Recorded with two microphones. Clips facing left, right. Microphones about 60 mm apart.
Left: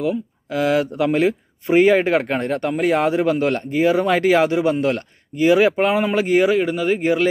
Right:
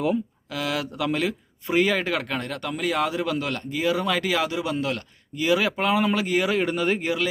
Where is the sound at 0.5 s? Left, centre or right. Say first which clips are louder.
Left 10 dB; left.